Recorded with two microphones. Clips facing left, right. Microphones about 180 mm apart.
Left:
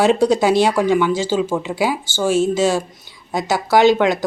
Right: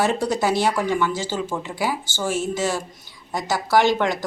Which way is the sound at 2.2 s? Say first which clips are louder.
Left 8 dB; 90° left.